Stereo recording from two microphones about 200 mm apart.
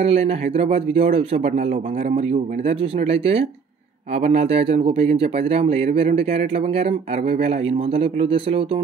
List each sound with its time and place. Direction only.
0.0 s speech: 30° right (ahead or behind)